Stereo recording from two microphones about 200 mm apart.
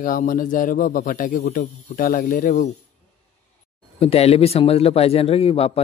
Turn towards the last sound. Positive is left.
turn(degrees=30)  # may be behind; listen again after turning